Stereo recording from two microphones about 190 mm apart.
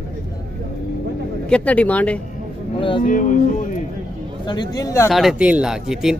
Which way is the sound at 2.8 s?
25° left (ahead or behind).